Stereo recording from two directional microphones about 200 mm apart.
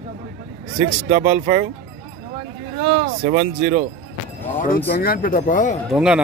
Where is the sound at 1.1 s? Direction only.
45° right (ahead or behind).